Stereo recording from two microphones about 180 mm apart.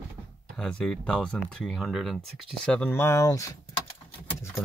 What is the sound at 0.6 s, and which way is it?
Speech, 5° left (ahead or behind).